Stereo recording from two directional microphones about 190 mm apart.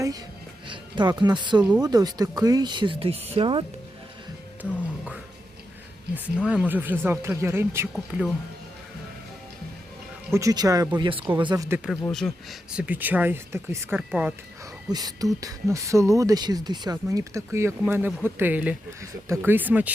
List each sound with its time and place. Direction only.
0.7 s speech: 25° right (ahead or behind)
6.1 s speech: 5° right (ahead or behind)
10.3 s speech: 20° right (ahead or behind)
12.0 s speech: centre (ahead or behind)
14.8 s speech: 20° right (ahead or behind)